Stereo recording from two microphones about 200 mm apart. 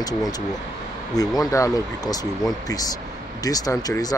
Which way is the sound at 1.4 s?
15° left (ahead or behind).